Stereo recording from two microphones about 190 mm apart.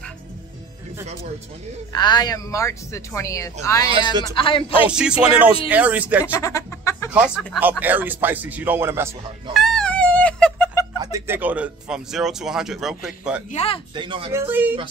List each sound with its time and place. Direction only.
1.9 s speech: 20° left (ahead or behind)
3.9 s speech: 25° right (ahead or behind)
4.4 s speech: 30° left (ahead or behind)
4.8 s speech: 5° right (ahead or behind)
6.3 s a sound: 15° left (ahead or behind)
7.1 s speech: 5° right (ahead or behind)
9.5 s chicken: centre (ahead or behind)
11.0 s speech: 20° right (ahead or behind)
13.5 s speech: 35° left (ahead or behind)
13.9 s speech: 25° right (ahead or behind)
14.3 s speech: 10° right (ahead or behind)